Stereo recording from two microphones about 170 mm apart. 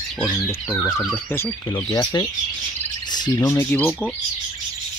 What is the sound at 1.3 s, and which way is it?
Speech, 15° left (ahead or behind).